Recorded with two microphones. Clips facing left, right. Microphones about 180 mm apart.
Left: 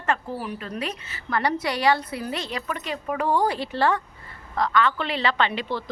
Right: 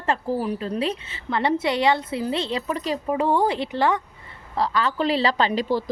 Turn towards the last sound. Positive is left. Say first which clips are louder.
# right 4 dB
turn(degrees=-40)  # may be behind; listen again after turning